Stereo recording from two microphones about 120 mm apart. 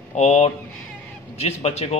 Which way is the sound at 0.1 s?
70° left (ahead or behind).